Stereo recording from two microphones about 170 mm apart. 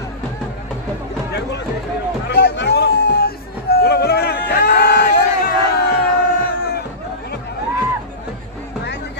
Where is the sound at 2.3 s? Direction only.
75° left (ahead or behind); by 5.4 s 50° left (ahead or behind).